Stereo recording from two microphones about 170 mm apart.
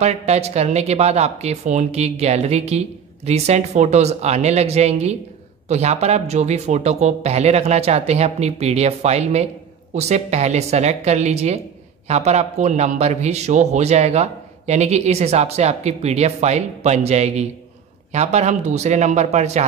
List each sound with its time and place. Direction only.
0.0 s a man's voice: 40° right (ahead or behind)